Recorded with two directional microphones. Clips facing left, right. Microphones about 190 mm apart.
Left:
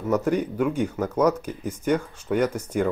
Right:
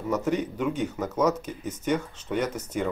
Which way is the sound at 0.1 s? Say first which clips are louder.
Left 4 dB; 10° left (ahead or behind).